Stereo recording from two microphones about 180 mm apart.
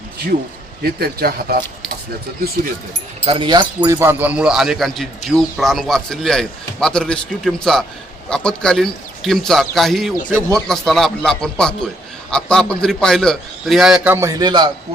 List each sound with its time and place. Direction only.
0.8 s speech: 60° right (ahead or behind)
3.2 s speech: 30° right (ahead or behind)
3.8 s speech: 15° right (ahead or behind)